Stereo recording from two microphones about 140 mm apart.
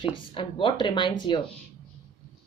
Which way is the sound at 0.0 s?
40° left (ahead or behind).